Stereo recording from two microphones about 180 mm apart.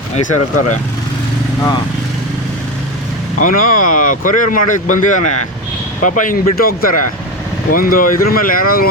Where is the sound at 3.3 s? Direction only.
50° left (ahead or behind).